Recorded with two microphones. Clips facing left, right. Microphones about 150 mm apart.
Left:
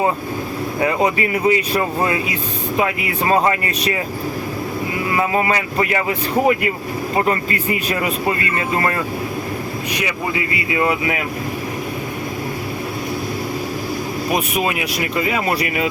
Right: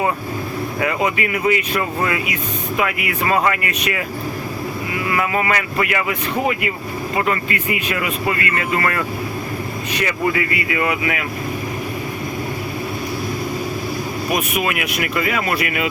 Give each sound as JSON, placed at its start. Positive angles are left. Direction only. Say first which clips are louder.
{"t": 0.8, "sound": "speech", "louder": "left 3 dB", "side_deg": 30}
{"t": 5.1, "sound": "speech", "louder": "left 2 dB", "side_deg": 30}
{"t": 7.2, "sound": "speech", "louder": "left 2 dB", "side_deg": 35}
{"t": 9.9, "sound": "speech", "louder": "right 4 dB", "side_deg": 15}
{"t": 10.8, "sound": "speech", "louder": "left 3 dB", "side_deg": 30}
{"t": 14.3, "sound": "speech", "louder": "left 1 dB", "side_deg": 30}